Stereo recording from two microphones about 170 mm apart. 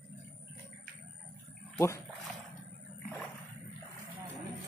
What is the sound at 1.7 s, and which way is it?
Speech, 20° left (ahead or behind).